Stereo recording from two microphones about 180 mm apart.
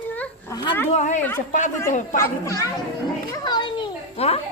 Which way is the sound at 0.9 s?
40° left (ahead or behind).